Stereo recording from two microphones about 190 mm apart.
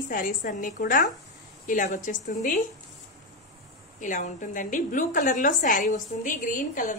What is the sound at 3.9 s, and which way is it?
A woman's voice, 40° left (ahead or behind).